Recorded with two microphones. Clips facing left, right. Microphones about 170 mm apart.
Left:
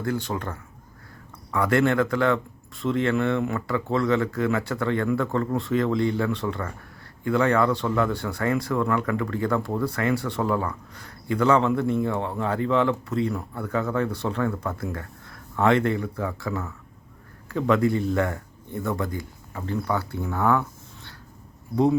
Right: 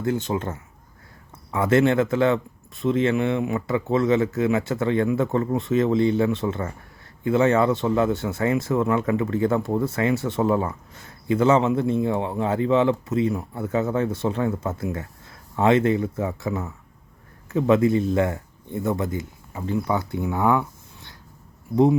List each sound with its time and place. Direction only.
0.0 s speech: 20° right (ahead or behind)